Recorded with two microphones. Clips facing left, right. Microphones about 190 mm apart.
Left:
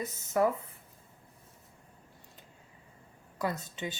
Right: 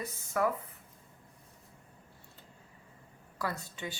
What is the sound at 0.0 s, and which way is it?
Speech, 25° left (ahead or behind).